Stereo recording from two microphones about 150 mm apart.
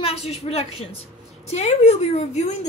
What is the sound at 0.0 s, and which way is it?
A woman's voice, 40° left (ahead or behind).